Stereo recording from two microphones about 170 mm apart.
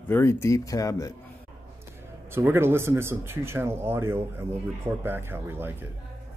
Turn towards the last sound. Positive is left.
turn(degrees=-15)  # may be behind; listen again after turning